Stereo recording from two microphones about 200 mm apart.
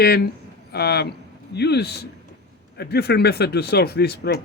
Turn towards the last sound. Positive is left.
turn(degrees=55)  # may be behind; listen again after turning